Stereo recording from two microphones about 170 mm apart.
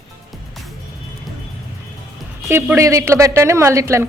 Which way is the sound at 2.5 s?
15° right (ahead or behind).